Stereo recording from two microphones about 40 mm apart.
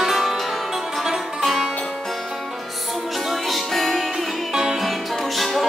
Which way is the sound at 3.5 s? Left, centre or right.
Centre.